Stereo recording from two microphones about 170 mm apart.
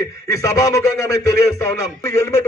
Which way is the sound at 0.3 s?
20° left (ahead or behind).